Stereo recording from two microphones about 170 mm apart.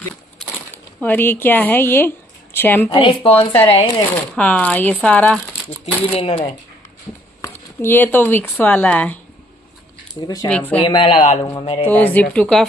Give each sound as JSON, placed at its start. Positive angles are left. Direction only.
{"t": 0.4, "sound": "a sound", "side_deg": 5}
{"t": 1.0, "sound": "a woman's voice", "side_deg": 10}
{"t": 2.9, "sound": "speech", "side_deg": 30}
{"t": 4.4, "sound": "speech", "side_deg": 10}
{"t": 6.1, "sound": "speech", "side_deg": 35}
{"t": 7.4, "sound": "speech", "side_deg": 15}
{"t": 10.2, "sound": "speech", "side_deg": 20}
{"t": 10.5, "sound": "speech", "side_deg": 10}
{"t": 10.9, "sound": "speech", "side_deg": 30}
{"t": 11.8, "sound": "a woman's voice", "side_deg": 10}